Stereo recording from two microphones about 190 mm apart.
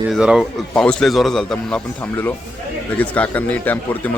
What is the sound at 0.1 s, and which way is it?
Speech, centre (ahead or behind).